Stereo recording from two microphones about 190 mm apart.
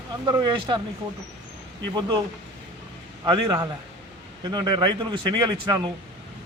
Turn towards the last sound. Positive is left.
turn(degrees=-25)  # may be behind; listen again after turning